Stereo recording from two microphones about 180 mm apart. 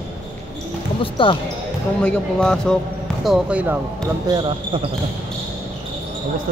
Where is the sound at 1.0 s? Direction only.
30° left (ahead or behind).